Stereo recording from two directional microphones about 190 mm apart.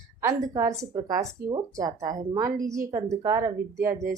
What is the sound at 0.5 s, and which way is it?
Speech, 15° right (ahead or behind).